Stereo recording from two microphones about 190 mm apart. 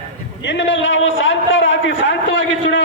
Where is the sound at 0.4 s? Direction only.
70° left (ahead or behind).